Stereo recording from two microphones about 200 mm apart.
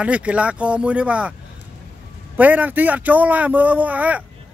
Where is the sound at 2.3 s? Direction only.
10° right (ahead or behind).